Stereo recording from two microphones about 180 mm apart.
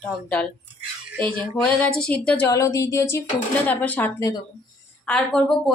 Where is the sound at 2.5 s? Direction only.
20° left (ahead or behind).